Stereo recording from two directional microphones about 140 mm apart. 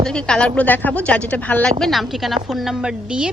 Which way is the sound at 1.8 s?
Centre (ahead or behind).